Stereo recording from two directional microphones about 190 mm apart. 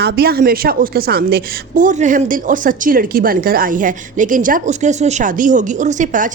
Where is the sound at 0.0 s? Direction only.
55° right (ahead or behind).